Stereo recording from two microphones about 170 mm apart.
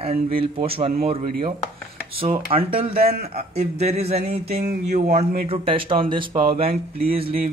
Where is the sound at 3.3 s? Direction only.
40° right (ahead or behind).